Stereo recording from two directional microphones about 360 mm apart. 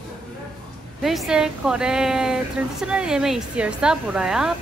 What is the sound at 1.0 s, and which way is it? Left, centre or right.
Speech, centre.